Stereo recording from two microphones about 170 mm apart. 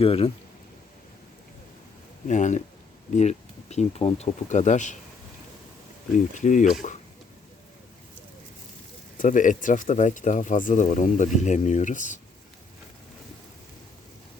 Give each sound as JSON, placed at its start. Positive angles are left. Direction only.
{"t": 0.0, "sound": "speech", "side_deg": 35}
{"t": 2.2, "sound": "speech", "side_deg": 45}
{"t": 6.3, "sound": "speech", "side_deg": 45}
{"t": 9.1, "sound": "speech", "side_deg": 50}